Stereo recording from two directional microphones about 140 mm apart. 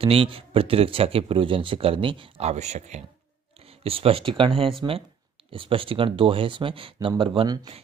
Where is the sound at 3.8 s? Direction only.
45° right (ahead or behind).